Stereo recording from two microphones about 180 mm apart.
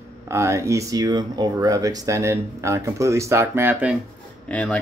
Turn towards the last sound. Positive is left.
turn(degrees=5)  # may be behind; listen again after turning